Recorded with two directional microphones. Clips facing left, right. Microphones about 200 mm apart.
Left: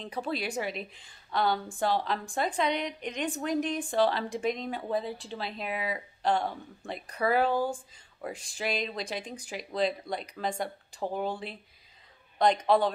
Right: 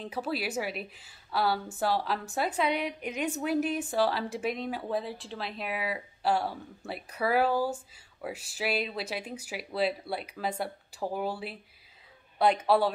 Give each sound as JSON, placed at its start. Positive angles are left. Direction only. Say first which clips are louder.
{"t": 0.0, "sound": "a woman's voice", "louder": "even", "side_deg": -5}